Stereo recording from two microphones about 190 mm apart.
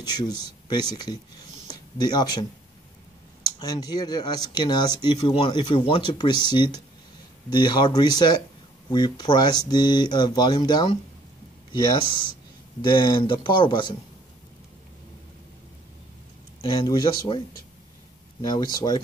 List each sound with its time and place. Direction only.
0.0 s speech: 20° left (ahead or behind)
3.5 s speech: 20° left (ahead or behind)
16.6 s speech: 20° left (ahead or behind)